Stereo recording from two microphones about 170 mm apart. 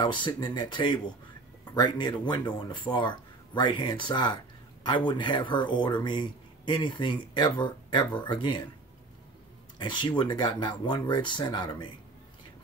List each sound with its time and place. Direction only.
0.0 s speech: 25° left (ahead or behind)
9.8 s speech: 25° left (ahead or behind)